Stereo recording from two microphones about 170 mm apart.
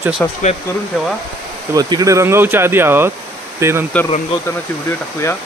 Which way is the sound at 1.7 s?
20° right (ahead or behind).